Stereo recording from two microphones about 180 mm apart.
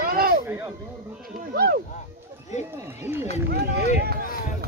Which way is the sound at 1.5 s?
60° right (ahead or behind).